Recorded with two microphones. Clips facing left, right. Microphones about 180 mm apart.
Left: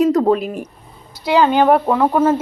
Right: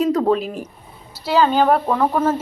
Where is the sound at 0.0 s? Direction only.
10° left (ahead or behind).